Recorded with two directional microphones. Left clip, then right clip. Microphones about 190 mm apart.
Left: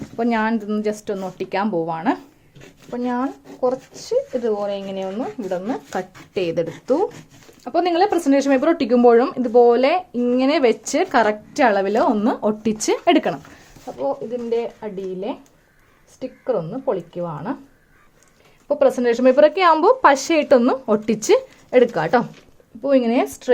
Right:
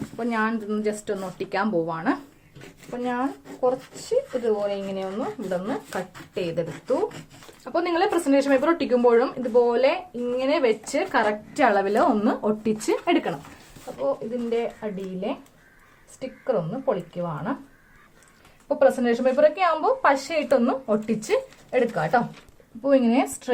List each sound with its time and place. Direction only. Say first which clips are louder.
0.2 s speech: left 5 dB; 45° left (ahead or behind)
2.6 s speech: left 4 dB; 20° left (ahead or behind)
3.8 s speech: left 3 dB; 5° left (ahead or behind)
4.9 s speech: left 3 dB; 25° left (ahead or behind)
6.3 s speech: left 6 dB; 55° left (ahead or behind); by 12.7 s 35° left (ahead or behind)
12.8 s speech: left 8 dB; 50° left (ahead or behind)
14.5 s speech: left 3 dB; 40° left (ahead or behind)
16.4 s speech: left 3 dB; 35° left (ahead or behind)
18.8 s speech: left 3 dB; 45° left (ahead or behind)